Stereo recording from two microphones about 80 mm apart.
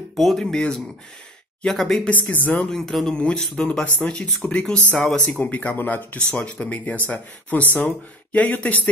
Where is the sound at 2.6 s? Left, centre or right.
Centre.